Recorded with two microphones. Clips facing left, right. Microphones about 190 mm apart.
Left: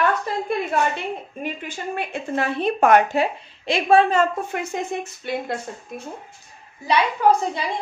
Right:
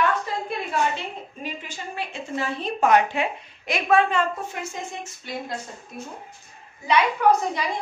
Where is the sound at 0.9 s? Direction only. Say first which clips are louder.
Left 4 dB; 55° left (ahead or behind).